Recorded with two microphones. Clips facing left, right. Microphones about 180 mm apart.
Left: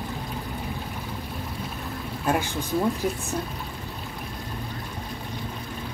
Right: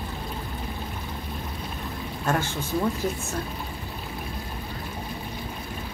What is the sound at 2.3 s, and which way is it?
Speech, 15° left (ahead or behind).